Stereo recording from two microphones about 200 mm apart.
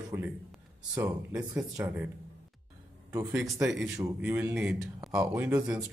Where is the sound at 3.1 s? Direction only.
15° right (ahead or behind).